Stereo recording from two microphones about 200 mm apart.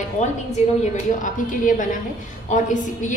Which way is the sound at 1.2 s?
40° left (ahead or behind).